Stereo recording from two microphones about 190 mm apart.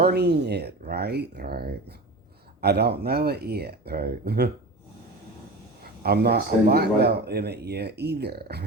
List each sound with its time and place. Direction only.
0.0 s speech: 60° right (ahead or behind)
5.8 s speech: 55° right (ahead or behind)